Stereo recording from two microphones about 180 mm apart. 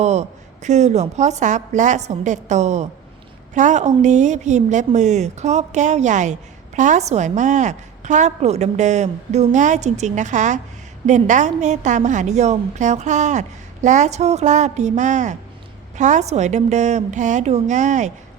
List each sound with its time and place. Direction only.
0.0 s a woman's voice: 40° right (ahead or behind)